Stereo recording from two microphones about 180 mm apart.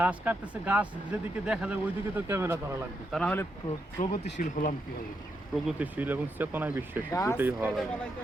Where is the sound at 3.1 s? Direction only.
5° left (ahead or behind).